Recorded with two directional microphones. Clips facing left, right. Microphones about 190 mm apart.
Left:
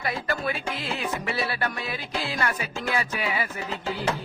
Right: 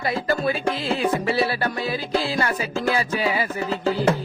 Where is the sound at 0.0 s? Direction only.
30° right (ahead or behind).